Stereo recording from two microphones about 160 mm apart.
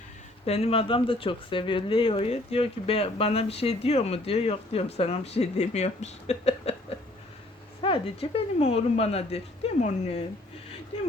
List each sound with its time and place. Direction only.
0.4 s speech: 40° left (ahead or behind)
7.8 s speech: 35° left (ahead or behind)